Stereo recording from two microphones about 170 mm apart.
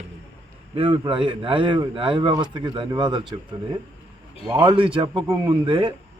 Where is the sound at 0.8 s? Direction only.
30° right (ahead or behind).